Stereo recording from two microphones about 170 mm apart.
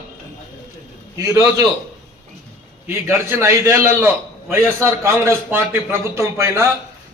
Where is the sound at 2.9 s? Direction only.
15° right (ahead or behind).